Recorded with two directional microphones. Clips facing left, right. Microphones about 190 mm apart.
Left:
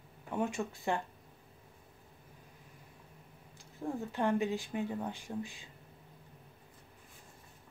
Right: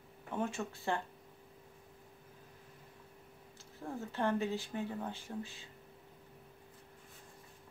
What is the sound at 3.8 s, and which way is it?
Speech, 15° left (ahead or behind).